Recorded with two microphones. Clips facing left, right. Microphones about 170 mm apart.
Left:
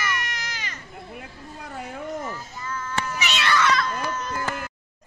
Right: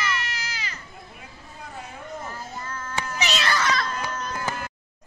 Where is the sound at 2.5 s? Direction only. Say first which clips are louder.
Left 2 dB; 50° right (ahead or behind).